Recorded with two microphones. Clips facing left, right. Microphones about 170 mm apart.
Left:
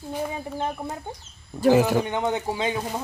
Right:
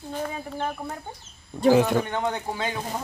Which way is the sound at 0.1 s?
10° left (ahead or behind).